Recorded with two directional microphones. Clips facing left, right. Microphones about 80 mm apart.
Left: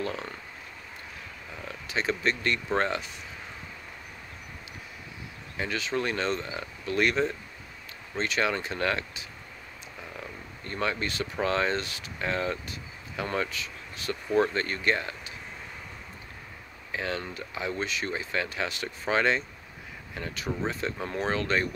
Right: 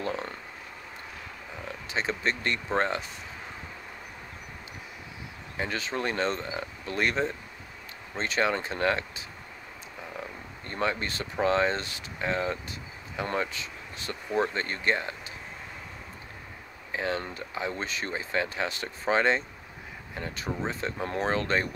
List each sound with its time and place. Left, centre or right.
0.0 s a sound: right
1.9 s speech: right
5.6 s speech: right
10.1 s wild animals: right
11.4 s speech: right
14.3 s speech: centre
16.9 s speech: right